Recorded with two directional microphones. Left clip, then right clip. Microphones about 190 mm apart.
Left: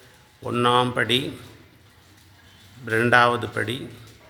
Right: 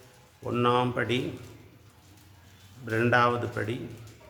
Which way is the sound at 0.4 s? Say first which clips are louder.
Left 5 dB; 25° left (ahead or behind).